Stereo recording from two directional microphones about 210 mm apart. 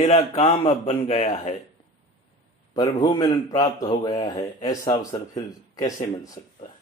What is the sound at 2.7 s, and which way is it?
A man's voice, 20° left (ahead or behind).